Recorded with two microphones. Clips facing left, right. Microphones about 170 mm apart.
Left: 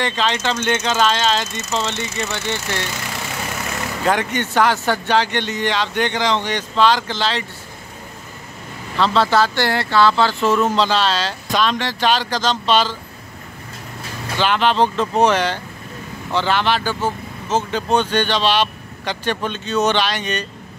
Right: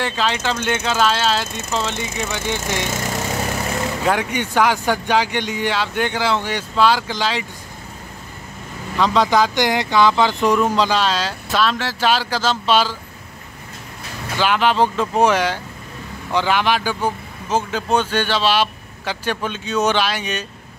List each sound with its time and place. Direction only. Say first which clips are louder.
0.0 s speech: left 1 dB; 5° right (ahead or behind)
4.0 s speech: left 3 dB; 5° right (ahead or behind)
8.9 s speech: even; 15° right (ahead or behind)
14.4 s speech: even; 10° right (ahead or behind)